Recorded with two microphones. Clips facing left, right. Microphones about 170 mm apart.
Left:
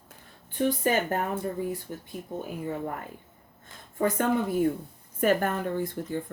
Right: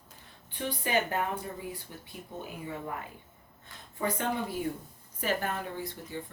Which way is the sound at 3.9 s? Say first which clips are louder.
Left 6 dB; 45° left (ahead or behind).